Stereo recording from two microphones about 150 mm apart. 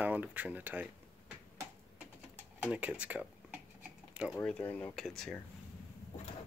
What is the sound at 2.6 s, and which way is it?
Speech, 10° right (ahead or behind).